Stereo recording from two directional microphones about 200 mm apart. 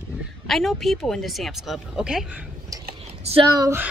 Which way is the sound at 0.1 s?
Centre (ahead or behind).